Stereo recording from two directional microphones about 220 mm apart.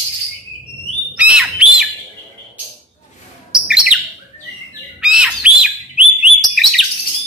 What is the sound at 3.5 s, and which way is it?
Bird, 5° right (ahead or behind).